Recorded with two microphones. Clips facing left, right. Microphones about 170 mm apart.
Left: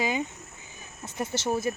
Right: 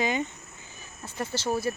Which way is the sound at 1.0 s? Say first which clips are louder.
Left 1 dB; 20° left (ahead or behind).